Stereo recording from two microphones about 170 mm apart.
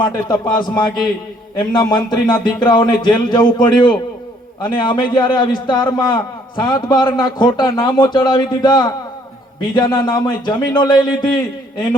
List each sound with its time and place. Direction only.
0.0 s a man's voice: 25° left (ahead or behind)